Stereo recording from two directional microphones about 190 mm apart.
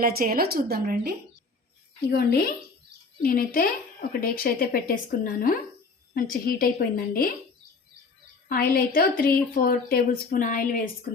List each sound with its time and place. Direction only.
0.0 s a woman's voice: 50° right (ahead or behind)
2.0 s speech: 55° left (ahead or behind)
8.4 s speech: 50° left (ahead or behind)